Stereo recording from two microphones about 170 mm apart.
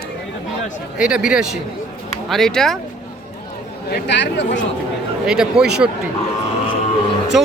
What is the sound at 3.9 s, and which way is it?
Speech, 90° left.